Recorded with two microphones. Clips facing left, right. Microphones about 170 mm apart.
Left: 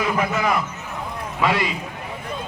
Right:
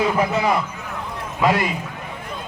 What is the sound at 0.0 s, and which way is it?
Speech, 30° right (ahead or behind).